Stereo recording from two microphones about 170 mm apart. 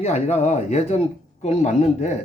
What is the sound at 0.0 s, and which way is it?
Speech, 40° left (ahead or behind).